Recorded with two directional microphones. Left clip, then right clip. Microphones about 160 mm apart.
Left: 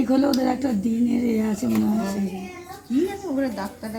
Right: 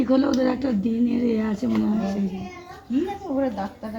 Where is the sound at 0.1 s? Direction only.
35° left (ahead or behind).